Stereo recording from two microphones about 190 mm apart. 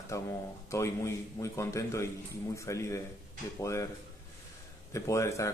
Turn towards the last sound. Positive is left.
turn(degrees=15)  # may be behind; listen again after turning